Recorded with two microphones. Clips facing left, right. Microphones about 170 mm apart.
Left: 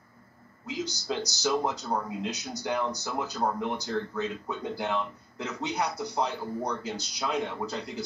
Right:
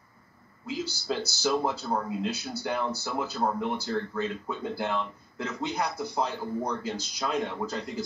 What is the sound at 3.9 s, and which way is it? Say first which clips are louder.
Speech: right 1 dB; 5° right (ahead or behind).